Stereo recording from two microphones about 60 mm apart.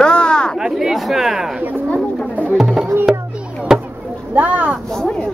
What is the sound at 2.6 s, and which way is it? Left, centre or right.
Music, centre.